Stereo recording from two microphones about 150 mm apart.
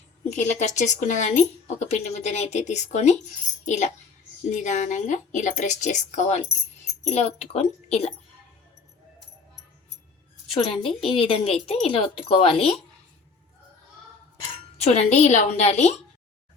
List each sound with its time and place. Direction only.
0.3 s speech: 50° left (ahead or behind)
10.7 s speech: 35° left (ahead or behind)
14.8 s speech: 45° left (ahead or behind)